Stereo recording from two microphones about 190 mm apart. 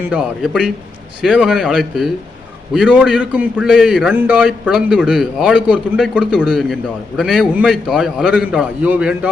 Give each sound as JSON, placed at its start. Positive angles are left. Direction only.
{"t": 0.1, "sound": "speech", "side_deg": -5}